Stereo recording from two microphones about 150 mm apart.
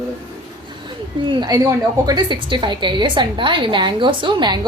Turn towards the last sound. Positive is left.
turn(degrees=-30)  # may be behind; listen again after turning